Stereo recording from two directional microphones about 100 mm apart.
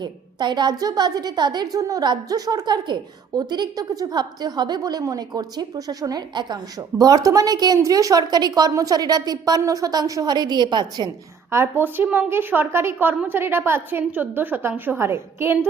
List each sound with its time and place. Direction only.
0.0 s a woman's voice: 45° right (ahead or behind)
11.5 s a woman's voice: 25° right (ahead or behind)